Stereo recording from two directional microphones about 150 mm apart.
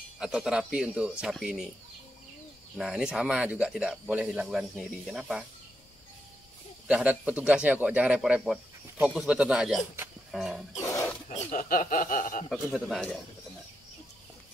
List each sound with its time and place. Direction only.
0.2 s speech: 5° right (ahead or behind)
2.8 s speech: 5° right (ahead or behind)
6.9 s a man's voice: 10° right (ahead or behind)
11.2 s speech: 55° left (ahead or behind)
12.7 s speech: centre (ahead or behind)